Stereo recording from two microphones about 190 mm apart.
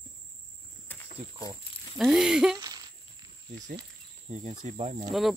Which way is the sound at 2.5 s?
20° right (ahead or behind).